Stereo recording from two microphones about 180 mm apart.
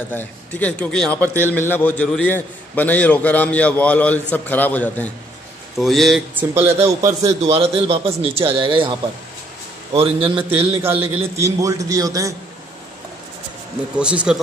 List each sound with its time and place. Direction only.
0.1 s a man's voice: 10° left (ahead or behind)
6.3 s speech: 10° right (ahead or behind)
7.5 s a man's voice: 35° right (ahead or behind)
11.3 s a man's voice: 15° right (ahead or behind)
13.9 s speech: 5° right (ahead or behind)